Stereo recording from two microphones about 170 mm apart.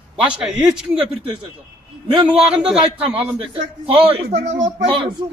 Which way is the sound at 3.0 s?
35° right (ahead or behind).